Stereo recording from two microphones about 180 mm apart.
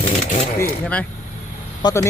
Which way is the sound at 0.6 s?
5° left (ahead or behind).